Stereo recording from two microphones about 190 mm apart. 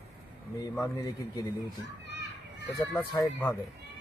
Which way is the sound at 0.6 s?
15° left (ahead or behind).